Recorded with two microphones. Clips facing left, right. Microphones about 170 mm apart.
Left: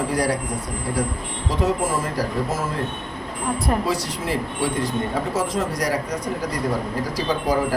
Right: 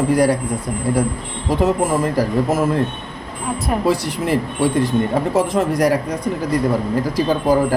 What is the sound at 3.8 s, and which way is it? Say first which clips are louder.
A man's voice: right 6 dB; 55° right (ahead or behind).